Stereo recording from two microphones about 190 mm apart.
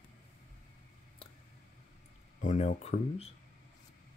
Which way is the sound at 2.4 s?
35° left (ahead or behind).